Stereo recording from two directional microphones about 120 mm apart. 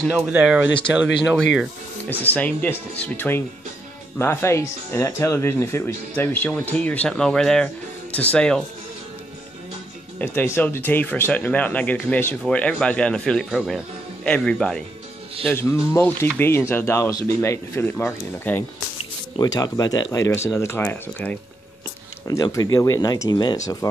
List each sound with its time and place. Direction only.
0.2 s speech: 10° right (ahead or behind)
2.2 s speech: 15° left (ahead or behind)
10.1 s speech: 20° left (ahead or behind)
15.5 s speech: 20° left (ahead or behind)
19.3 s speech: 35° left (ahead or behind); by 21.4 s 15° left (ahead or behind)
22.3 s speech: 30° left (ahead or behind)